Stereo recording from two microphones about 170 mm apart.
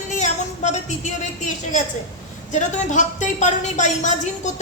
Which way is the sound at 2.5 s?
45° left (ahead or behind).